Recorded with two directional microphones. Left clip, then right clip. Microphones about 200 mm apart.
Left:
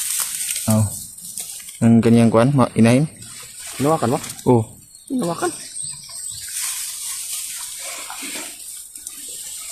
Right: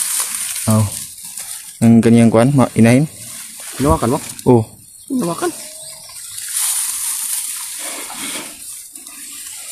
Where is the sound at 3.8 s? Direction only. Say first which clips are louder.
Right 3 dB; 45° right (ahead or behind).